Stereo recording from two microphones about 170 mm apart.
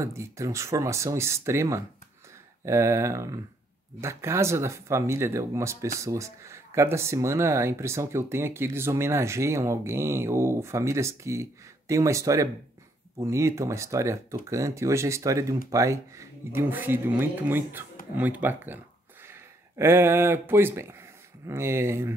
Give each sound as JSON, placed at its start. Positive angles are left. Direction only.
{"t": 0.0, "sound": "speech", "side_deg": -15}
{"t": 19.8, "sound": "speech", "side_deg": -15}